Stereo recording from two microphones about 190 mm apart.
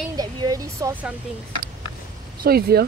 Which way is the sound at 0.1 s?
20° right (ahead or behind).